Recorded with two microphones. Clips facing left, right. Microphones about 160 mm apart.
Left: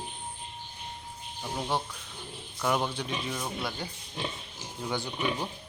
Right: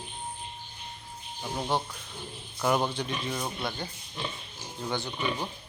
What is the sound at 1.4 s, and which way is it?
Music, 5° right (ahead or behind).